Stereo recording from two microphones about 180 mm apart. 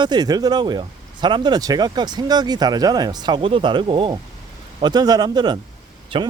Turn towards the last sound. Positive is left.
turn(degrees=-30)  # may be behind; listen again after turning